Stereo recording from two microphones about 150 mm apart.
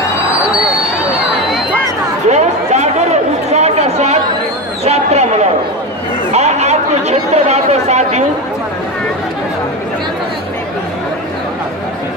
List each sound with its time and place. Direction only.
2.2 s chatter: 50° right (ahead or behind)
4.8 s basketball bounce: 45° right (ahead or behind)
6.3 s chatter: 45° right (ahead or behind)